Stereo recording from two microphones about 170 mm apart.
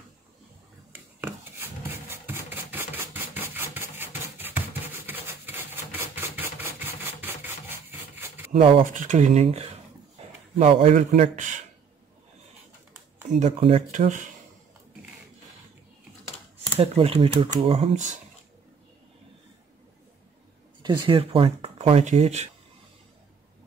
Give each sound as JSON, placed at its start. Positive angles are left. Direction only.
{"t": 0.9, "sound": "rub", "side_deg": -10}
{"t": 3.5, "sound": "a sound", "side_deg": -15}
{"t": 8.5, "sound": "speech", "side_deg": -35}
{"t": 8.8, "sound": "speech", "side_deg": -50}
{"t": 13.4, "sound": "speech", "side_deg": -35}
{"t": 13.9, "sound": "speech", "side_deg": -45}
{"t": 16.7, "sound": "speech", "side_deg": -35}
{"t": 20.8, "sound": "speech", "side_deg": -25}